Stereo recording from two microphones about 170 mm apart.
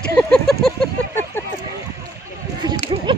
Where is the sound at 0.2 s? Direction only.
5° left (ahead or behind).